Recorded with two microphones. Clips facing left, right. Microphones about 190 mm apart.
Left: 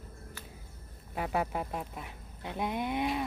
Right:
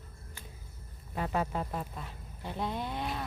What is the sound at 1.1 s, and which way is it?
Speech, 10° left (ahead or behind).